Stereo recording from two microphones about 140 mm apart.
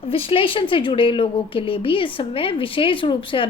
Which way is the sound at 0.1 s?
40° left (ahead or behind).